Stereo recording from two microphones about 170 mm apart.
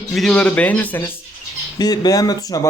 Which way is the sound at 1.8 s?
25° left (ahead or behind).